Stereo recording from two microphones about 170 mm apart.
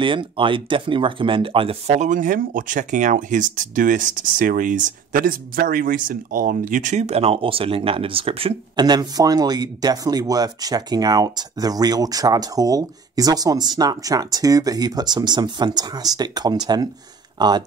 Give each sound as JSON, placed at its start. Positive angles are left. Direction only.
{"t": 0.0, "sound": "speech", "side_deg": -30}